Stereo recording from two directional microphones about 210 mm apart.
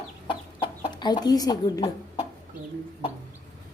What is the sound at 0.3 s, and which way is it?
Chicken, 25° left (ahead or behind).